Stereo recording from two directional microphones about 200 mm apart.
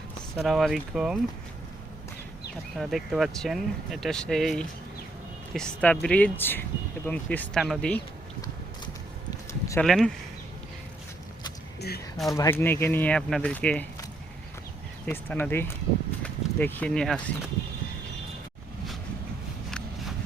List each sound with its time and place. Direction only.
0.3 s speech: centre (ahead or behind)
2.7 s speech: centre (ahead or behind)
9.5 s a sound: 15° left (ahead or behind)
9.8 s speech: centre (ahead or behind)
12.3 s speech: 15° left (ahead or behind)
15.0 s speech: 10° left (ahead or behind)